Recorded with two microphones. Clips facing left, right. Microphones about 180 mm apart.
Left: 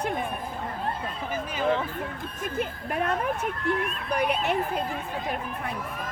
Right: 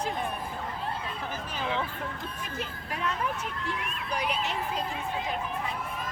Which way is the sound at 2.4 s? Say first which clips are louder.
Left 7 dB; 55° left (ahead or behind).